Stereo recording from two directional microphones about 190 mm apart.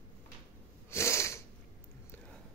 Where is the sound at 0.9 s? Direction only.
15° left (ahead or behind).